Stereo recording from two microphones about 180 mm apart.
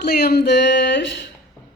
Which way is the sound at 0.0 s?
60° left (ahead or behind).